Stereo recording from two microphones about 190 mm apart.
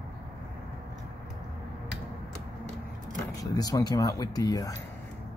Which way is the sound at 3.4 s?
20° left (ahead or behind).